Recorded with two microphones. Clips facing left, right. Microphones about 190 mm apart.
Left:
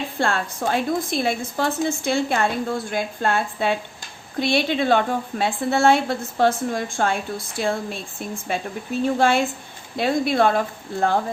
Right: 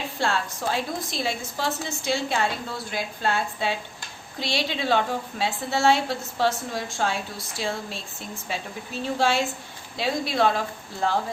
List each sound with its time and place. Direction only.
0.2 s a woman's voice: 55° left (ahead or behind)